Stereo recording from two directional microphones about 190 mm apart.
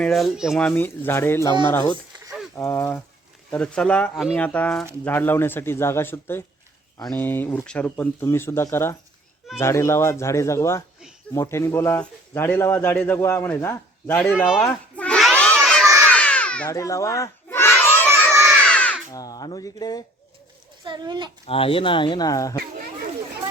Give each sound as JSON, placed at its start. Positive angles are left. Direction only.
{"t": 0.0, "sound": "speech", "side_deg": 0}
{"t": 0.7, "sound": "speech", "side_deg": 10}
{"t": 14.2, "sound": "speech", "side_deg": 0}
{"t": 14.6, "sound": "a sound", "side_deg": 5}
{"t": 15.6, "sound": "crowd", "side_deg": 0}
{"t": 16.0, "sound": "a sound", "side_deg": 5}
{"t": 16.6, "sound": "crowd", "side_deg": 15}
{"t": 18.6, "sound": "crow", "side_deg": 5}
{"t": 19.1, "sound": "speech", "side_deg": 20}
{"t": 20.8, "sound": "speech", "side_deg": -25}
{"t": 21.4, "sound": "speech", "side_deg": 30}